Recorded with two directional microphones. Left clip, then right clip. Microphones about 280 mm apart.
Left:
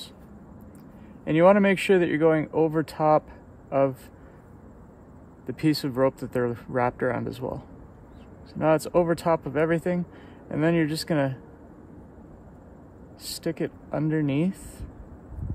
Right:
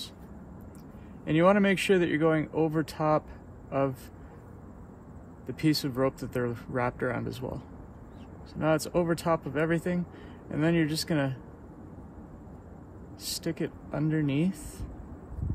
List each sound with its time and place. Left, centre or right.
1.2 s speech: left
5.5 s speech: left
13.2 s speech: left